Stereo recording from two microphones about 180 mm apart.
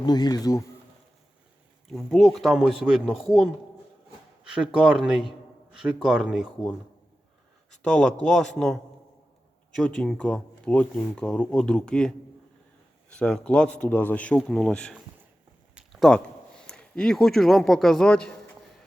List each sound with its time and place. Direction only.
0.0 s speech: 25° left (ahead or behind)
1.9 s speech: centre (ahead or behind)
7.7 s speech: 5° left (ahead or behind)